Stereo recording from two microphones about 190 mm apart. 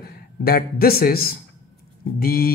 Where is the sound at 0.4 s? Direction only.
55° left (ahead or behind).